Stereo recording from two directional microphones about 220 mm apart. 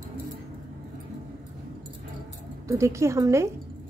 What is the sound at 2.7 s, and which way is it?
Speech, 15° right (ahead or behind).